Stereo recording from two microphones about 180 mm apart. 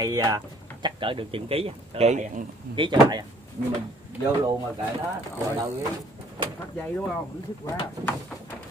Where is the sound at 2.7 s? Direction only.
25° right (ahead or behind).